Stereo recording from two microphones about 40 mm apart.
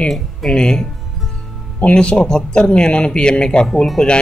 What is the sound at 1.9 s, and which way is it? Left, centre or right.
A man's voice, left.